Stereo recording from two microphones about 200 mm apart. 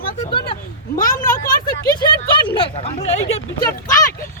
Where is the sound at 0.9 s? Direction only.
40° left (ahead or behind).